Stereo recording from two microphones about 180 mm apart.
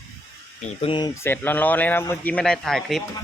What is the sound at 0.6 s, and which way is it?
Speech, 40° left (ahead or behind).